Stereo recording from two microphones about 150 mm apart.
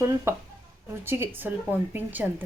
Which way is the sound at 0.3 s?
20° right (ahead or behind).